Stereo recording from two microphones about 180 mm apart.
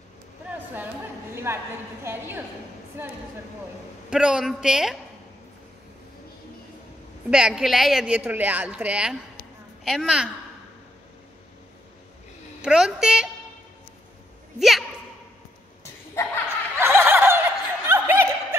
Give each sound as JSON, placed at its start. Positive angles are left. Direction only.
{"t": 1.3, "sound": "speech", "side_deg": -15}
{"t": 4.1, "sound": "speech", "side_deg": -5}
{"t": 7.2, "sound": "speech", "side_deg": -5}
{"t": 12.6, "sound": "speech", "side_deg": -5}
{"t": 14.6, "sound": "speech", "side_deg": 0}
{"t": 16.7, "sound": "snicker", "side_deg": -15}